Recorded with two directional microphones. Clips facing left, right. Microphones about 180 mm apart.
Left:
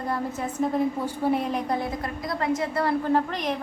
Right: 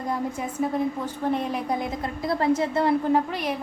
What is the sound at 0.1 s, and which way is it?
Speech, 5° right (ahead or behind).